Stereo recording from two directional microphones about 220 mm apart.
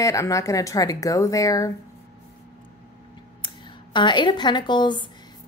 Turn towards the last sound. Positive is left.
turn(degrees=20)  # may be behind; listen again after turning